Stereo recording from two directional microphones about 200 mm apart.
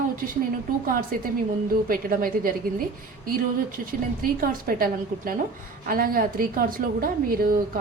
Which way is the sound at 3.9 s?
45° right (ahead or behind).